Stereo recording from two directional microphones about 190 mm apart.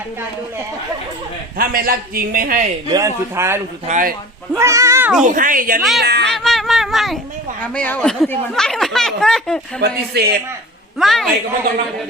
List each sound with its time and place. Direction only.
1.5 s a man's voice: 50° right (ahead or behind)
2.9 s speech: 15° right (ahead or behind)
3.8 s a man's voice: 40° right (ahead or behind)
4.5 s speech: 15° right (ahead or behind)
5.2 s a man's voice: 45° right (ahead or behind)
6.0 s speech: 60° right (ahead or behind)
6.3 s speech: centre (ahead or behind)
9.8 s speech: 55° right (ahead or behind)
11.0 s speech: centre (ahead or behind)